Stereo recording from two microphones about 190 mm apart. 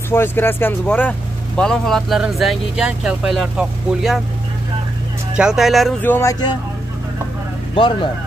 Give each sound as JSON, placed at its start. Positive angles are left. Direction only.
{"t": 0.1, "sound": "speech", "side_deg": 10}
{"t": 5.3, "sound": "speech", "side_deg": -5}
{"t": 6.0, "sound": "speech", "side_deg": 10}
{"t": 7.7, "sound": "speech", "side_deg": 25}